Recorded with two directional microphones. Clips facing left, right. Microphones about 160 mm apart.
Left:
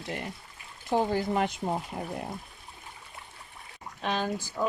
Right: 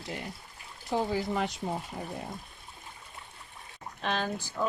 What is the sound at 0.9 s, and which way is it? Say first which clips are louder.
Speech: left 3 dB; 50° left (ahead or behind).